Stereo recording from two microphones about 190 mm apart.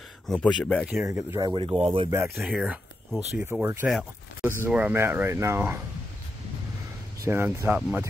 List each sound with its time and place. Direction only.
0.3 s speech: 5° left (ahead or behind)
1.0 s speech: 15° right (ahead or behind); by 2.0 s 30° right (ahead or behind)
2.0 s speech: 15° right (ahead or behind)
7.2 s speech: 10° right (ahead or behind)